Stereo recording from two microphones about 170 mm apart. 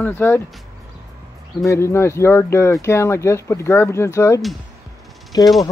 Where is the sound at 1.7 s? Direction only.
15° left (ahead or behind).